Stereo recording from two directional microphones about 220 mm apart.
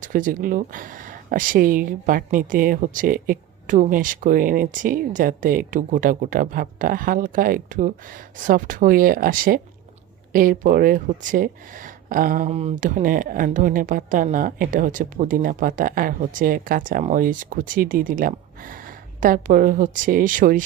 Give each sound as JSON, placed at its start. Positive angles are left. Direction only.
{"t": 0.0, "sound": "speech", "side_deg": -40}